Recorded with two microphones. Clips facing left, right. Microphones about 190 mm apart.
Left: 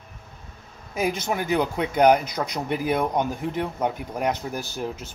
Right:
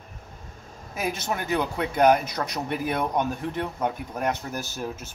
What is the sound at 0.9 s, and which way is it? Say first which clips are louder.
Speech: left 4 dB; 15° left (ahead or behind).